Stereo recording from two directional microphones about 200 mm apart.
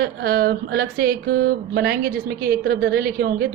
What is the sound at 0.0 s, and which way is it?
Speech, 50° right (ahead or behind).